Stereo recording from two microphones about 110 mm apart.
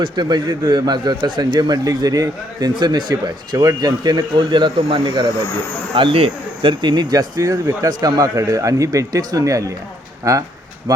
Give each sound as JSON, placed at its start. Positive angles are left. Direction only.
{"t": 0.0, "sound": "speech", "side_deg": -40}